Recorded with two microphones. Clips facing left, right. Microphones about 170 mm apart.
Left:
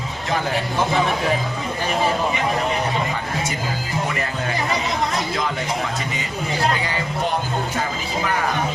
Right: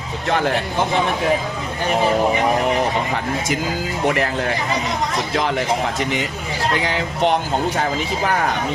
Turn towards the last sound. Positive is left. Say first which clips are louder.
# right 5 dB
turn(degrees=-75)  # may be behind; listen again after turning